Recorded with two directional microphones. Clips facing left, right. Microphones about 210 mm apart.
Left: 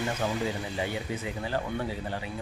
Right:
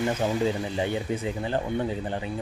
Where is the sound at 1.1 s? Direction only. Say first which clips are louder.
Right 4 dB; 25° right (ahead or behind).